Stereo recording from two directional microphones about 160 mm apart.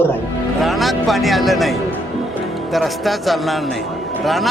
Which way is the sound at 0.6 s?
Centre (ahead or behind).